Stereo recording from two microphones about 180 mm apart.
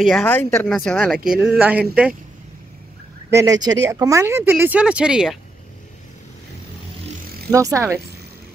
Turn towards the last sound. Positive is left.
turn(degrees=-15)  # may be behind; listen again after turning